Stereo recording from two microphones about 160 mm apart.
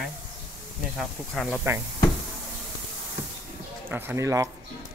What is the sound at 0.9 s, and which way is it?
Speech, centre (ahead or behind).